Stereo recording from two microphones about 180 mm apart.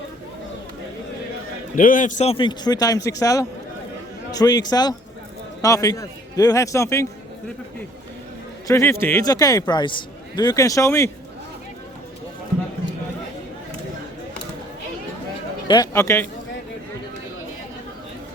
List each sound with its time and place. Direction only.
1.7 s a man's voice: 50° left (ahead or behind); by 7.1 s 15° left (ahead or behind)
8.6 s a man's voice: 15° left (ahead or behind)
15.6 s speech: 25° left (ahead or behind)
15.9 s a man's voice: 15° left (ahead or behind)